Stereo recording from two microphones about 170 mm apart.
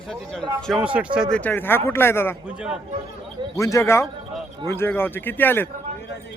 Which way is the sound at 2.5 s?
5° right (ahead or behind).